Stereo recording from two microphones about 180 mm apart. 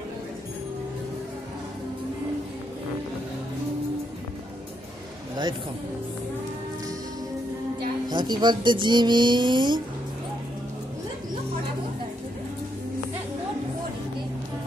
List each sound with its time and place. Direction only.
8.1 s speech: 25° right (ahead or behind)